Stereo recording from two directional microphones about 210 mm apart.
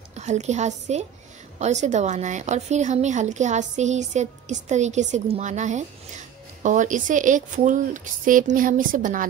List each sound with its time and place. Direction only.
0.2 s a woman's voice: 35° right (ahead or behind)